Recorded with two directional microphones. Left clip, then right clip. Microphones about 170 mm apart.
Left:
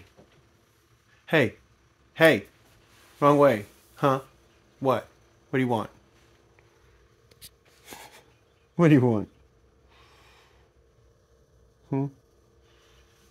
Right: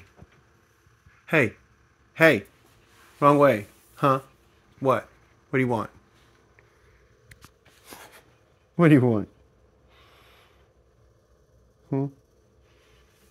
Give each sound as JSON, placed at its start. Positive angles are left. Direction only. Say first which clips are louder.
{"t": 1.2, "sound": "a sound", "louder": "right 1 dB", "side_deg": 0}
{"t": 2.1, "sound": "speech", "louder": "right 1 dB", "side_deg": -5}
{"t": 5.5, "sound": "speech", "louder": "right 1 dB", "side_deg": -5}
{"t": 7.3, "sound": "a sound", "louder": "left 4 dB", "side_deg": 15}
{"t": 8.7, "sound": "speech", "louder": "right 2 dB", "side_deg": 10}
{"t": 9.9, "sound": "gasp", "louder": "right 1 dB", "side_deg": 15}
{"t": 11.9, "sound": "speech", "louder": "right 1 dB", "side_deg": 10}